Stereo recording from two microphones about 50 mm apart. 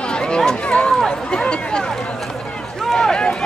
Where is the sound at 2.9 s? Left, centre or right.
Centre.